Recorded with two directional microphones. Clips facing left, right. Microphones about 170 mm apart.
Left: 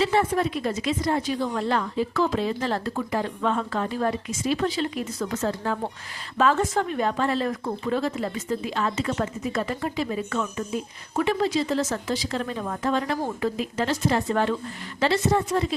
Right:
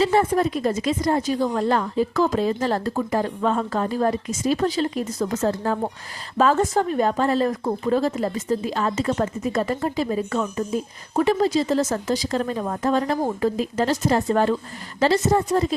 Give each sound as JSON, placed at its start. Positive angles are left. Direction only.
{"t": 0.0, "sound": "a woman's voice", "side_deg": -40}